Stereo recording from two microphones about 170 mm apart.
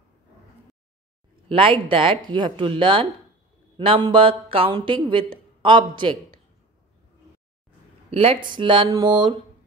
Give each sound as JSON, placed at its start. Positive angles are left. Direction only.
{"t": 1.5, "sound": "speech", "side_deg": -30}
{"t": 8.1, "sound": "speech", "side_deg": -35}